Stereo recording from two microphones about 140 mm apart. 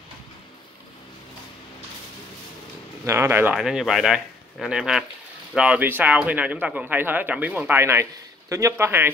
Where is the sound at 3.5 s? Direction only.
5° right (ahead or behind).